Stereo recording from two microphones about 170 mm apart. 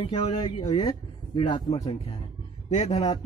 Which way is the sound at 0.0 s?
35° left (ahead or behind).